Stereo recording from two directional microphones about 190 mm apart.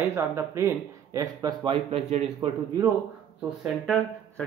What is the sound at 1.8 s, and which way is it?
Speech, 35° right (ahead or behind).